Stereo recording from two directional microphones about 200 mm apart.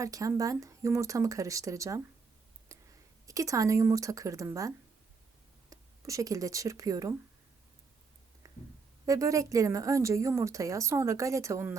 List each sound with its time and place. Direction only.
0.0 s speech: 15° right (ahead or behind)
3.2 s speech: 15° right (ahead or behind)
5.7 s speech: 15° right (ahead or behind)
8.4 s a sound: 15° right (ahead or behind)
9.0 s speech: 15° right (ahead or behind)